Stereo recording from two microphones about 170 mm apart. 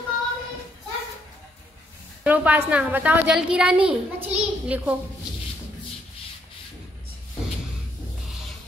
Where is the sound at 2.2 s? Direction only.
10° right (ahead or behind).